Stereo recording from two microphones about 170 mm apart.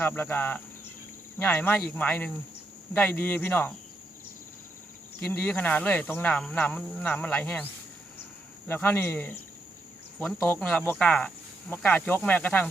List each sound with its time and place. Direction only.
0.0 s speech: 10° left (ahead or behind)
5.2 s speech: 10° left (ahead or behind)